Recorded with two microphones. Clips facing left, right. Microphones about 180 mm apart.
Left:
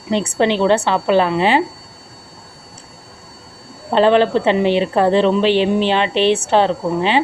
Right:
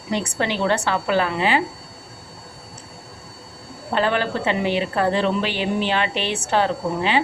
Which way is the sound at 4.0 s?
25° left (ahead or behind).